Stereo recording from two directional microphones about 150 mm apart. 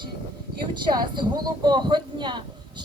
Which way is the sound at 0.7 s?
30° right (ahead or behind).